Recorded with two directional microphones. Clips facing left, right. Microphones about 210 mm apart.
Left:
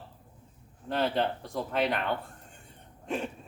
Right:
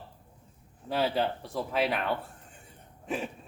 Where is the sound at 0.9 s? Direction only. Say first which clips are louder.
Even; 5° right (ahead or behind).